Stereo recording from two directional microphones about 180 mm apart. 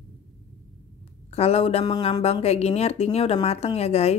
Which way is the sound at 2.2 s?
35° left (ahead or behind).